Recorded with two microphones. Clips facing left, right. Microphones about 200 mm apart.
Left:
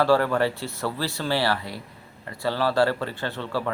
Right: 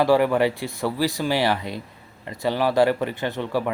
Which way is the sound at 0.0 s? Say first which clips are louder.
Right 2 dB; 15° right (ahead or behind).